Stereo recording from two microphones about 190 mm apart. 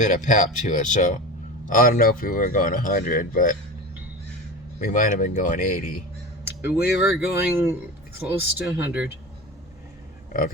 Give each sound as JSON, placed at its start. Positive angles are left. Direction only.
{"t": 0.0, "sound": "speech", "side_deg": 40}
{"t": 4.8, "sound": "speech", "side_deg": 45}
{"t": 6.6, "sound": "speech", "side_deg": -10}